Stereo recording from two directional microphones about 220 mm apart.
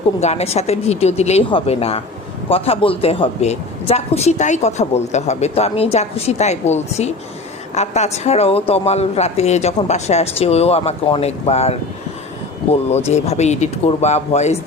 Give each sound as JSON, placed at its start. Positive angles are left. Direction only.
{"t": 0.2, "sound": "a woman's voice", "side_deg": 30}
{"t": 13.1, "sound": "speech", "side_deg": 30}